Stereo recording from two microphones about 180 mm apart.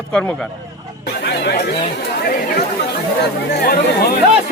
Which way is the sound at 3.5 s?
60° left (ahead or behind).